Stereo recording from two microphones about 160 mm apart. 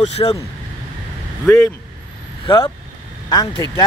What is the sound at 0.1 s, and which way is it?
Speech, 35° left (ahead or behind).